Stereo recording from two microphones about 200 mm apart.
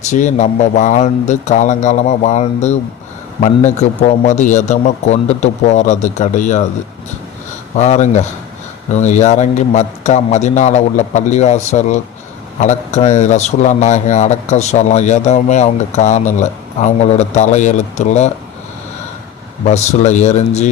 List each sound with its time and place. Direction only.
0.1 s speech: 35° left (ahead or behind)
7.8 s speech: 35° left (ahead or behind)
19.6 s speech: 35° left (ahead or behind)